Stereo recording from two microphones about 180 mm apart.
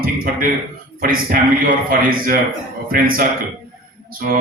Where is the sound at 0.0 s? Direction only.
55° right (ahead or behind).